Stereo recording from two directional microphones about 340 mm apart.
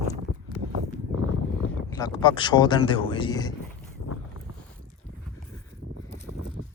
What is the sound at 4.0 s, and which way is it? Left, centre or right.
Boat, left.